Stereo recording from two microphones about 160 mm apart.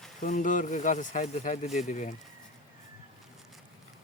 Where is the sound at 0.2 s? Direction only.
50° left (ahead or behind).